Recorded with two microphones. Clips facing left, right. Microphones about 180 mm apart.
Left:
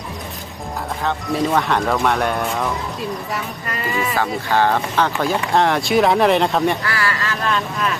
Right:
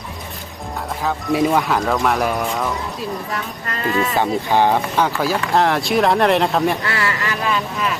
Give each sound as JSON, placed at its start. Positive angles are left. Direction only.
{"t": 1.0, "sound": "speech", "side_deg": -10}
{"t": 4.2, "sound": "speech", "side_deg": -15}
{"t": 5.2, "sound": "speech", "side_deg": 0}
{"t": 6.8, "sound": "speech", "side_deg": -25}
{"t": 7.4, "sound": "speech", "side_deg": -5}